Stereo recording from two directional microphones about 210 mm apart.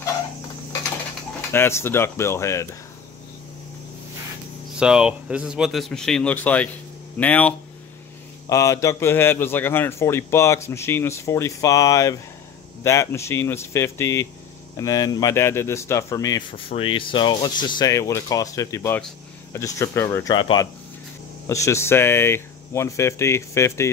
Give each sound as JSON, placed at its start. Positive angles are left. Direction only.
{"t": 1.5, "sound": "speech", "side_deg": 10}
{"t": 4.7, "sound": "speech", "side_deg": -5}